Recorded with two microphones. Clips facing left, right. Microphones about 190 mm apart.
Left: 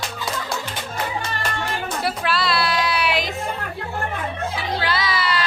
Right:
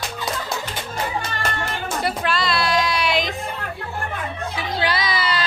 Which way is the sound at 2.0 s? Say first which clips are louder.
Right 1 dB; centre (ahead or behind).